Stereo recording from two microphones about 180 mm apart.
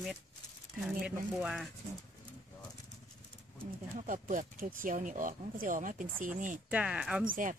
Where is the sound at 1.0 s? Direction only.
5° right (ahead or behind).